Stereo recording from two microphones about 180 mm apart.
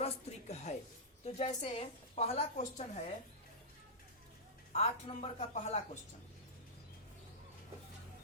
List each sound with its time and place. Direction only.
0.0 s a sound: 35° left (ahead or behind)
1.2 s a woman's voice: 35° left (ahead or behind)
4.7 s a woman's voice: 35° left (ahead or behind)